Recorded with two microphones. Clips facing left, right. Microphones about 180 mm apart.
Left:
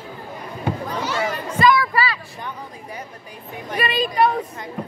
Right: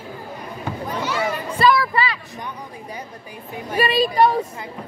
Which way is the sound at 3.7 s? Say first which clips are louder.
Right 4 dB; 35° right (ahead or behind).